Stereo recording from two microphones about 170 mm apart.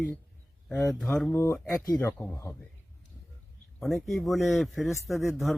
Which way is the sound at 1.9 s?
20° left (ahead or behind).